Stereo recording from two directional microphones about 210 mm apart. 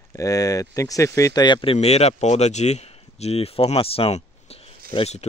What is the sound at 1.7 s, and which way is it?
Speech, 30° left (ahead or behind).